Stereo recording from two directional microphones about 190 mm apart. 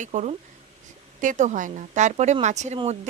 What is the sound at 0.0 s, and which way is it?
A woman's voice, 40° right (ahead or behind).